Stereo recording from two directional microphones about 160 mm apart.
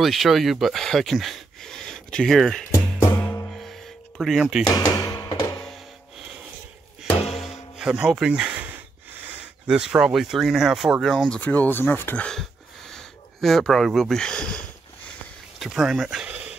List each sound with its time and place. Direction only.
0.0 s speech: centre (ahead or behind)
3.0 s music: 15° left (ahead or behind)
3.5 s music: centre (ahead or behind)
4.7 s music: 25° left (ahead or behind)
7.7 s music: 5° right (ahead or behind)
9.7 s speech: 5° right (ahead or behind)
15.6 s a sound: centre (ahead or behind)